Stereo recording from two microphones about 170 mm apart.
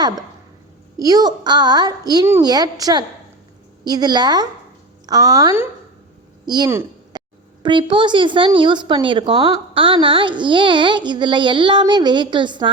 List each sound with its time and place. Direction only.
0.9 s a woman's voice: 20° right (ahead or behind)
6.4 s a sound: 25° right (ahead or behind)
7.6 s a woman's voice: 30° right (ahead or behind)